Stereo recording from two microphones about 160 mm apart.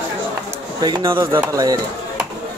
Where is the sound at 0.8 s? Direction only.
25° right (ahead or behind).